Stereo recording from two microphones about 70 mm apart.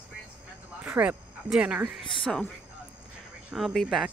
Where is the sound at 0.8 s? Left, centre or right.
Centre.